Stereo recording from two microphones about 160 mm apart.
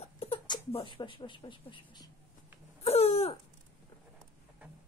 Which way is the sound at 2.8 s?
40° left (ahead or behind).